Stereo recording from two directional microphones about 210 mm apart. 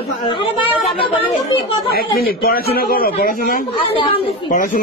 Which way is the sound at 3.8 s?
25° left (ahead or behind).